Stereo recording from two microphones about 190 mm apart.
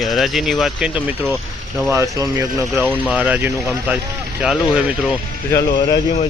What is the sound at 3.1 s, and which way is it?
Speech, 5° right (ahead or behind).